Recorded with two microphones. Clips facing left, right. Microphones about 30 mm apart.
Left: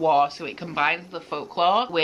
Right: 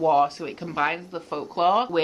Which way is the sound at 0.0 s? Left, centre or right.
Left.